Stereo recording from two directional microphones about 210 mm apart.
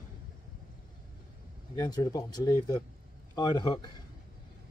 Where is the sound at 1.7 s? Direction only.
20° left (ahead or behind).